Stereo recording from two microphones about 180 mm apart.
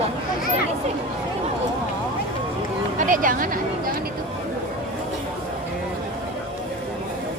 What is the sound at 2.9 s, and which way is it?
Speech, 45° right (ahead or behind).